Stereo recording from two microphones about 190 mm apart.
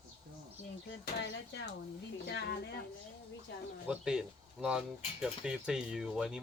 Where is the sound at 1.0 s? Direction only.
65° left (ahead or behind).